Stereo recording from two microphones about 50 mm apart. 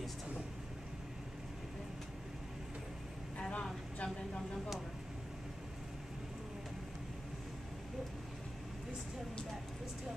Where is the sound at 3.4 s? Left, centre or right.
Left.